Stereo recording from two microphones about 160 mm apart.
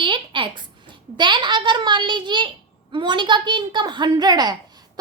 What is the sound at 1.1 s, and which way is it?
A woman's voice, 30° right (ahead or behind).